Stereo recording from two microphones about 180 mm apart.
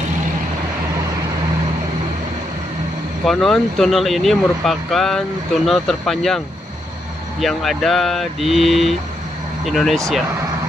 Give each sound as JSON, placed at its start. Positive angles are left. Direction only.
{"t": 3.3, "sound": "speech", "side_deg": 0}